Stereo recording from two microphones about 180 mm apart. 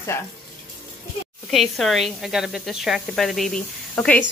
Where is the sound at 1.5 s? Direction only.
Centre (ahead or behind).